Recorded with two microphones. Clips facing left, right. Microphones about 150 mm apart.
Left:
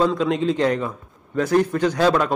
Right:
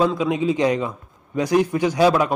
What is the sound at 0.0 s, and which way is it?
Speech, 5° right (ahead or behind).